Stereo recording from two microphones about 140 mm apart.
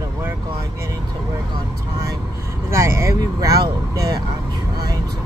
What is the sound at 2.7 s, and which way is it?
Speech, 20° right (ahead or behind).